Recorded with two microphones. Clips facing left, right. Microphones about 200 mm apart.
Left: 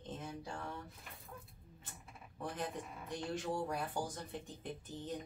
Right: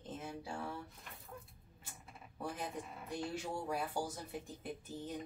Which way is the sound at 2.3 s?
10° right (ahead or behind).